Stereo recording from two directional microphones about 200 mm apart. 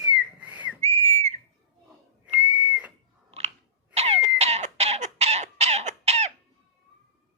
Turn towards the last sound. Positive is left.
turn(degrees=-35)  # may be behind; listen again after turning